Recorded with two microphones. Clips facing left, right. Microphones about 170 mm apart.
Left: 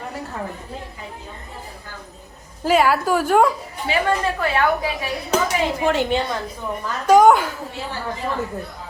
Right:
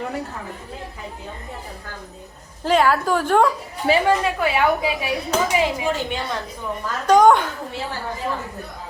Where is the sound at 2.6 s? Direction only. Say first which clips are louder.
Left 1 dB; 5° left (ahead or behind).